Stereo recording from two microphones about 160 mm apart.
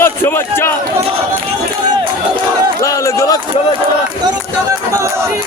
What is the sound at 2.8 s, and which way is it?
Speech, 20° left (ahead or behind).